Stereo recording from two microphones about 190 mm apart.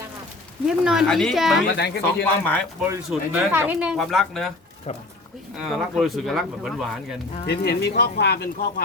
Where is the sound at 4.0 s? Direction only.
Centre (ahead or behind).